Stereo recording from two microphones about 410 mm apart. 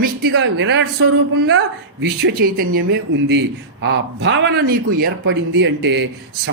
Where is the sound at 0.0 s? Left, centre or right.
Right.